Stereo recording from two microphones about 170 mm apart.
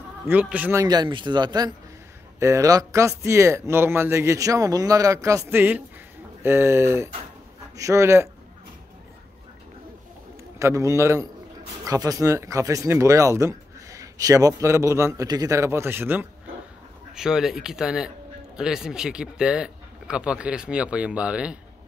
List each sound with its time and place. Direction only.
0.3 s speech: 10° right (ahead or behind)
0.8 s speech: 25° right (ahead or behind)
10.6 s speech: 20° right (ahead or behind)